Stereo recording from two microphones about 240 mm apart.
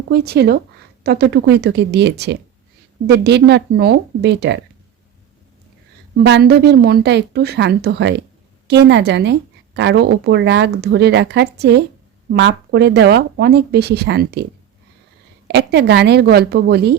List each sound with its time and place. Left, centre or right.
0.1 s a woman's voice: right
6.2 s a woman's voice: right
15.4 s a woman's voice: right